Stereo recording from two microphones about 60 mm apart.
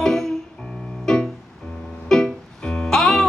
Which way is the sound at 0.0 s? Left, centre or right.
Centre.